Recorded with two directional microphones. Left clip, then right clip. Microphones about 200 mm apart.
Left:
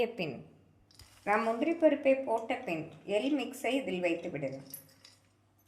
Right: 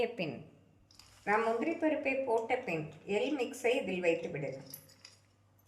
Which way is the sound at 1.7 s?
35° left (ahead or behind).